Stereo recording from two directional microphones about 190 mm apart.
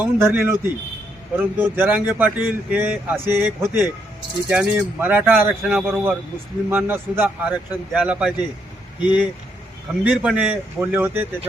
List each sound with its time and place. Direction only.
0.0 s a man's voice: 10° right (ahead or behind)
9.0 s speech: 25° left (ahead or behind)
9.9 s a man's voice: 5° right (ahead or behind)